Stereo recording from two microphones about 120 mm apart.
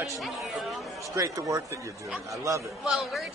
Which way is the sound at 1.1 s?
30° right (ahead or behind).